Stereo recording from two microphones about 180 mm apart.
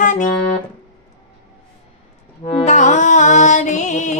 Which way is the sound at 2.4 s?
40° left (ahead or behind).